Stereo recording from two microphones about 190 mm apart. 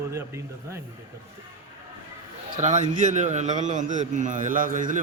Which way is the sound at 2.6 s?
40° right (ahead or behind).